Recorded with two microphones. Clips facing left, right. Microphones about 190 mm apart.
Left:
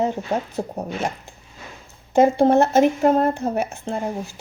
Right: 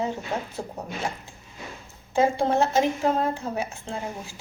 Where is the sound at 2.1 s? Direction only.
60° left (ahead or behind).